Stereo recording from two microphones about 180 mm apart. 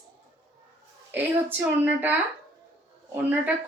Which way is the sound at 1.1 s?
10° right (ahead or behind).